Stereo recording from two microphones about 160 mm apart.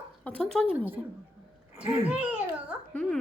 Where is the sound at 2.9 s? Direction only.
5° left (ahead or behind).